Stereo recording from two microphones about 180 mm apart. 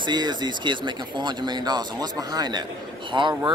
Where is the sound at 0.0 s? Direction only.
25° right (ahead or behind).